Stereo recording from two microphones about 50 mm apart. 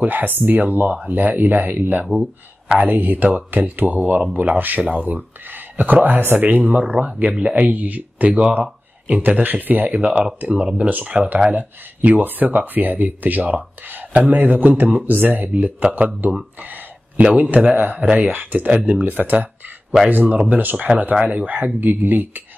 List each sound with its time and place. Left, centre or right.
0.0 s speech: right
10.0 s speech: centre; by 15.5 s right
15.5 s speech: right
16.2 s speech: right
16.5 s a sound: right
17.2 s speech: right
18.7 s speech: right
19.0 s speech: right
20.7 s speech: centre
21.3 s speech: right
21.7 s speech: right